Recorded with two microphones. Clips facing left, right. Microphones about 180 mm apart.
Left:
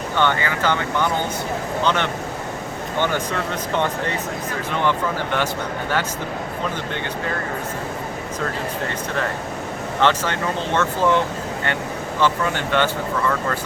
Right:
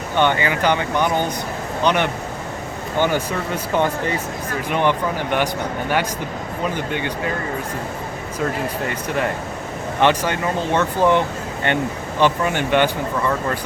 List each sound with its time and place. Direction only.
0.2 s speech: 15° right (ahead or behind)
10.0 s speech: 15° right (ahead or behind)
12.2 s speech: 15° right (ahead or behind)